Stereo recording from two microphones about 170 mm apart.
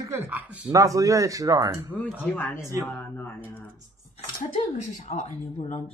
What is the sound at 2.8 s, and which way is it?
Speech, 15° left (ahead or behind).